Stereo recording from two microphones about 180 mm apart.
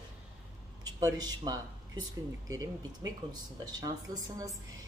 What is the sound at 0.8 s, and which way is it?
Speech, 20° right (ahead or behind).